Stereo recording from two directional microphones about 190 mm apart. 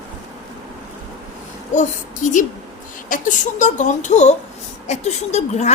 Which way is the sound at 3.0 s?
45° left (ahead or behind).